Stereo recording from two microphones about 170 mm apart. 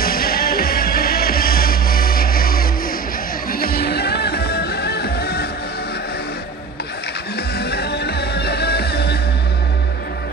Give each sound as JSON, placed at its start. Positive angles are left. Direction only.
{"t": 0.0, "sound": "music", "side_deg": 60}
{"t": 7.5, "sound": "music", "side_deg": 70}